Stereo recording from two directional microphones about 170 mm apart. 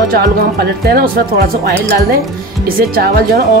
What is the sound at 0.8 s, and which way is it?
Speech, 65° right (ahead or behind).